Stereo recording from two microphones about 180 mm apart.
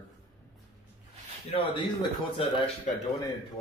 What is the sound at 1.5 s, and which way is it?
Speech, 25° left (ahead or behind).